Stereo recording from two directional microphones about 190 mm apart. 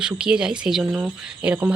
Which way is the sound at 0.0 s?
5° right (ahead or behind).